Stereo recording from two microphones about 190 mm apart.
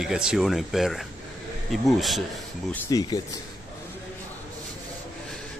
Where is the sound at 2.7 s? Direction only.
20° left (ahead or behind).